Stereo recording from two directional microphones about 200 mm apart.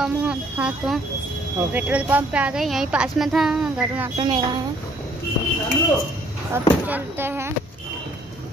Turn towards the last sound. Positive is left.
turn(degrees=-10)  # may be behind; listen again after turning